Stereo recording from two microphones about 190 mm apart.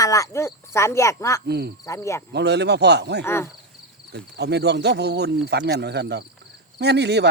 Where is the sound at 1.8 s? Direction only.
15° left (ahead or behind).